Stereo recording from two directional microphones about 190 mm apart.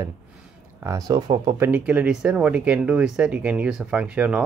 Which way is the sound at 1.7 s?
10° right (ahead or behind).